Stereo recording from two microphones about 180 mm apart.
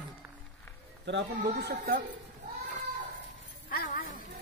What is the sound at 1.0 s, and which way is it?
Speech, 70° right (ahead or behind).